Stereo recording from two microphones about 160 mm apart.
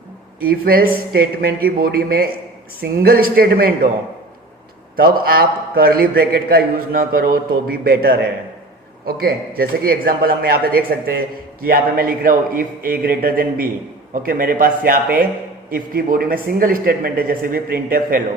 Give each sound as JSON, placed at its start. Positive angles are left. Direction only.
{"t": 0.3, "sound": "a man's voice", "side_deg": -65}
{"t": 4.9, "sound": "a man's voice", "side_deg": -70}